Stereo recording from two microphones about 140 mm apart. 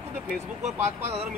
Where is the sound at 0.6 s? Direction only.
50° right (ahead or behind).